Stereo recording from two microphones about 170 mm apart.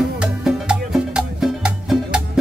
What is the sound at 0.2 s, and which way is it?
Music, 5° right (ahead or behind).